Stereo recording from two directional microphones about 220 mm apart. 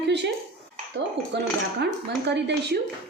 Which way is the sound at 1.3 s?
50° right (ahead or behind).